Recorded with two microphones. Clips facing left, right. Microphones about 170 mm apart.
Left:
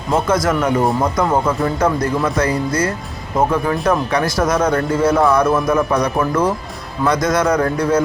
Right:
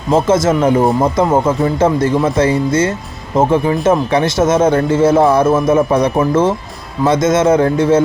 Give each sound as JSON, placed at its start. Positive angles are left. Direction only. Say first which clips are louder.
{"t": 0.1, "sound": "speech", "louder": "right 5 dB", "side_deg": -25}